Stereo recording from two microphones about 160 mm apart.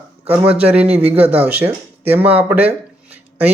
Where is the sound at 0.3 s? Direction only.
10° right (ahead or behind).